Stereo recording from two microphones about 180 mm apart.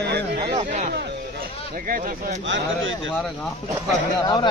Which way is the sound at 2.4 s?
90° right.